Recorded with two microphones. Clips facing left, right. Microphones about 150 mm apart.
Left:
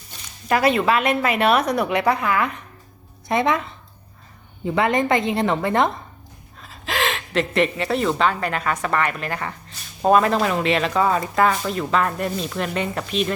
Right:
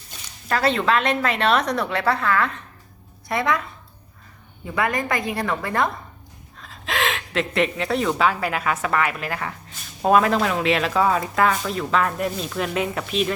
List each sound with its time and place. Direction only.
0.4 s a woman's voice: 15° left (ahead or behind)
6.6 s speech: centre (ahead or behind)